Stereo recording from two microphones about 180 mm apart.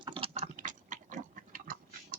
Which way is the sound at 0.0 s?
30° right (ahead or behind).